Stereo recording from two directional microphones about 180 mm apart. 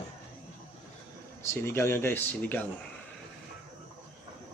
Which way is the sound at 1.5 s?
15° left (ahead or behind).